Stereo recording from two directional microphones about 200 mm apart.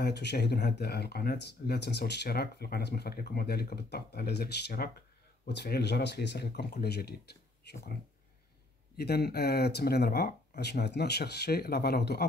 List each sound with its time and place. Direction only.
0.0 s speech: 55° left (ahead or behind)
8.9 s speech: 55° left (ahead or behind)